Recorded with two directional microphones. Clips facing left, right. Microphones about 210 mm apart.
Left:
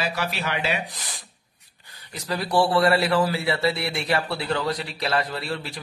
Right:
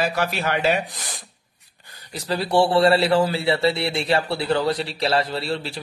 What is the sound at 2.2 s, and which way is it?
A man's voice, 30° right (ahead or behind).